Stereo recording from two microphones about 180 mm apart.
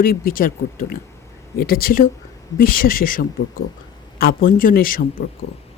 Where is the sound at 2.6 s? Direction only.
50° left (ahead or behind).